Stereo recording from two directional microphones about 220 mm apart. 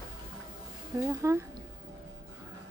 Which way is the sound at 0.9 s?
15° right (ahead or behind).